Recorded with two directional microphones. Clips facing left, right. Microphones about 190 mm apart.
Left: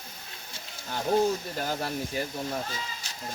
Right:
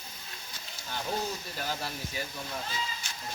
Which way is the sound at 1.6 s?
45° left (ahead or behind).